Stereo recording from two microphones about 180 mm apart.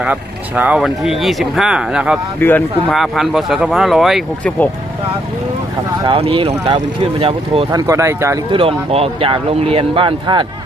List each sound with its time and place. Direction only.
0.0 s speech: 10° right (ahead or behind)
2.4 s speech: 10° left (ahead or behind)
2.9 s speech: centre (ahead or behind)
6.1 s speech: 30° right (ahead or behind); by 8.4 s 15° right (ahead or behind)
8.5 s speech: 35° right (ahead or behind)